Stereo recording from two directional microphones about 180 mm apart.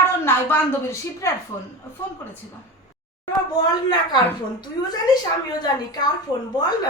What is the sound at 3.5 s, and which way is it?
A woman's voice, 20° left (ahead or behind).